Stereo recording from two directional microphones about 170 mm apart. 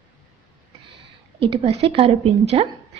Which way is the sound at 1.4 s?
35° right (ahead or behind).